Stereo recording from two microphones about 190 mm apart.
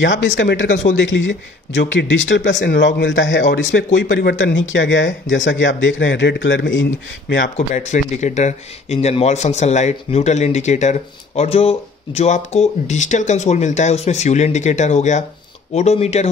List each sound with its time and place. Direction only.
0.4 s speech: 70° left (ahead or behind)
7.5 s speech: 40° left (ahead or behind)